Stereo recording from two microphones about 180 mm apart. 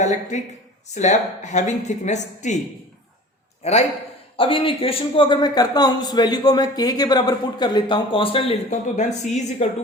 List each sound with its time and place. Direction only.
0.0 s a woman's voice: 40° left (ahead or behind)
3.6 s a man's voice: 35° left (ahead or behind)